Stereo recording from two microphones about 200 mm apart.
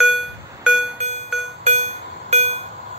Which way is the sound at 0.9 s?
35° right (ahead or behind).